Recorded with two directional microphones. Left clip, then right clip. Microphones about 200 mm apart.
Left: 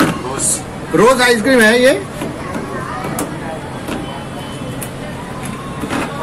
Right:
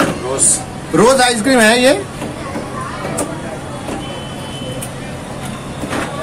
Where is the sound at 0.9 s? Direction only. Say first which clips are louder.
Even; 25° right (ahead or behind).